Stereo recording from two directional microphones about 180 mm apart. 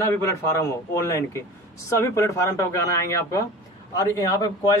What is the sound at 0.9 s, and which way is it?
Speech, 15° left (ahead or behind).